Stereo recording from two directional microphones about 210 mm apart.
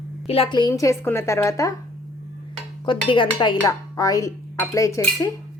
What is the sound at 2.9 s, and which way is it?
Speech, 25° left (ahead or behind).